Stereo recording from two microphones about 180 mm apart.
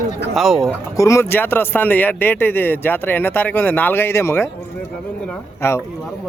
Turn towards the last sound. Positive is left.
turn(degrees=15)  # may be behind; listen again after turning